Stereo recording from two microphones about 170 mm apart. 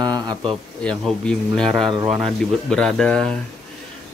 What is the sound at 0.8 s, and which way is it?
Speech, 5° left (ahead or behind).